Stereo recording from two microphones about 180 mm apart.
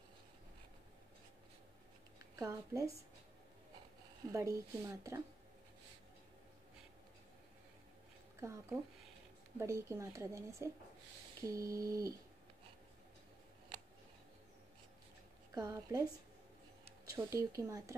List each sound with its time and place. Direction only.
2.3 s speech: 20° right (ahead or behind)
4.3 s speech: 15° right (ahead or behind)
8.4 s speech: 15° right (ahead or behind)
15.5 s a woman's voice: 20° right (ahead or behind)
17.1 s speech: 15° right (ahead or behind)